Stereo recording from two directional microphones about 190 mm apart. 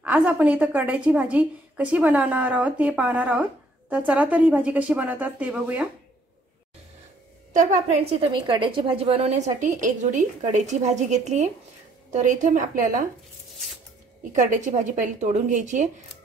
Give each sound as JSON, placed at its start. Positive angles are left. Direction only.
{"t": 0.0, "sound": "a woman's voice", "side_deg": -5}
{"t": 7.5, "sound": "a woman's voice", "side_deg": -35}
{"t": 14.3, "sound": "a woman's voice", "side_deg": -40}